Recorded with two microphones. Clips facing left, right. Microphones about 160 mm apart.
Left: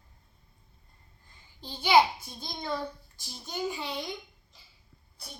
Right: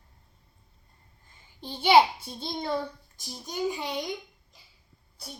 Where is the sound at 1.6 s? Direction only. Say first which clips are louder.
Right 3 dB; 25° right (ahead or behind).